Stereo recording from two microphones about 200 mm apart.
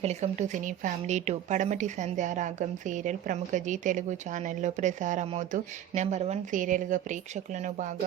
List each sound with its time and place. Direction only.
0.0 s a woman's voice: 35° right (ahead or behind)